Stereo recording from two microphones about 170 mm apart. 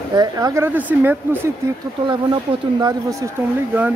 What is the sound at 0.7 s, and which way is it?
Speech, 10° right (ahead or behind).